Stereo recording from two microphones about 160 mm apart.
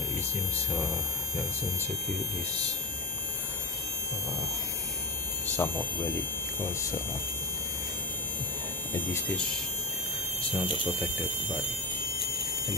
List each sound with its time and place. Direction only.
5.6 s speech: 10° left (ahead or behind)
8.9 s speech: 15° left (ahead or behind)
10.6 s speech: 30° left (ahead or behind)